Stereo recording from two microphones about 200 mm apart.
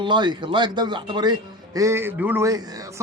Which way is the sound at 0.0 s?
25° right (ahead or behind).